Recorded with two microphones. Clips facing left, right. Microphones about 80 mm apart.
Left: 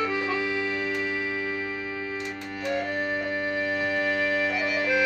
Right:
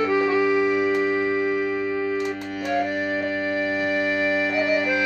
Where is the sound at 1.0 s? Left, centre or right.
Right.